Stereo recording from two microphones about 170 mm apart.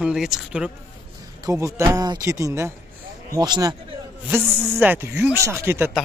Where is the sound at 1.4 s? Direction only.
20° right (ahead or behind).